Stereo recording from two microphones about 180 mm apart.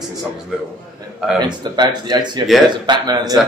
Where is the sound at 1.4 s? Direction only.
25° right (ahead or behind).